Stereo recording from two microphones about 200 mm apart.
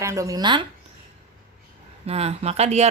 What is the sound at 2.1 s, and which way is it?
Speech, 30° right (ahead or behind).